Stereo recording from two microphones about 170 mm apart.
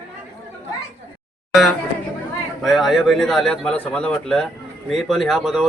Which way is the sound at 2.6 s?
Centre (ahead or behind).